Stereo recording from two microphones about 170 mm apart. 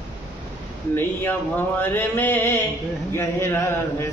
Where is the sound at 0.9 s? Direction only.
10° left (ahead or behind).